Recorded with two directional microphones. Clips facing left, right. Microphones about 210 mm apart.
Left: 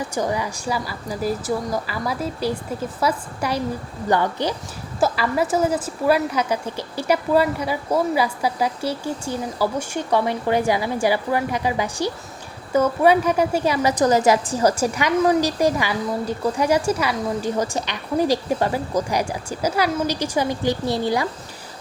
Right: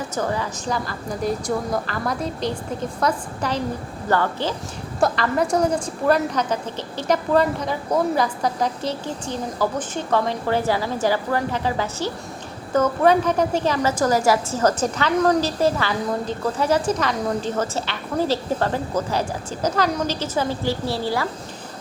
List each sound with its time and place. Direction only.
0.1 s a woman's voice: 15° left (ahead or behind)
4.9 s a woman's voice: 5° left (ahead or behind)